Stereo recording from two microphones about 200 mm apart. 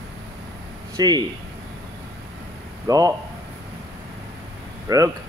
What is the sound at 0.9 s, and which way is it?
Speech, 20° right (ahead or behind).